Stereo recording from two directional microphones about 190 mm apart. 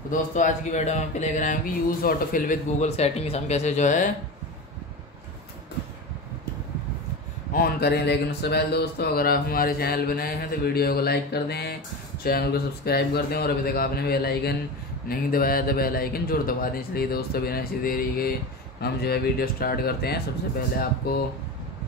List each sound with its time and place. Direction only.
0.1 s speech: 40° left (ahead or behind)
7.5 s speech: 55° left (ahead or behind)